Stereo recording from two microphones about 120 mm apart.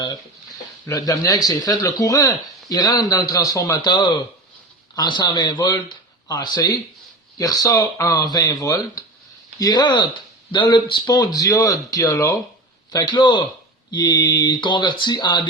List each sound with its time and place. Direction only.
0.9 s speech: 30° left (ahead or behind)